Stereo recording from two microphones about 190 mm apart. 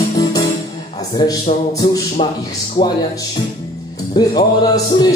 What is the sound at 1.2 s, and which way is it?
A man's voice, 20° left (ahead or behind).